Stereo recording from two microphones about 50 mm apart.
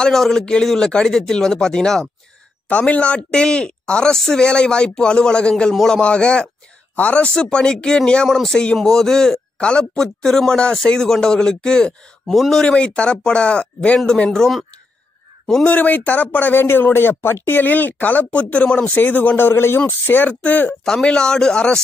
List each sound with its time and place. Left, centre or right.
0.0 s speech: centre
2.7 s speech: left
3.3 s speech: centre
8.3 s speech: centre
12.3 s speech: centre
12.6 s speech: left
15.4 s speech: centre
15.7 s speech: left
16.6 s speech: left
20.2 s speech: left
21.0 s speech: centre